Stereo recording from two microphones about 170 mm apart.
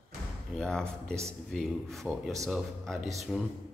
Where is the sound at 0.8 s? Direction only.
15° right (ahead or behind).